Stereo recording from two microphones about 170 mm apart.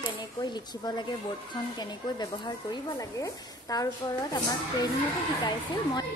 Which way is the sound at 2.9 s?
20° left (ahead or behind).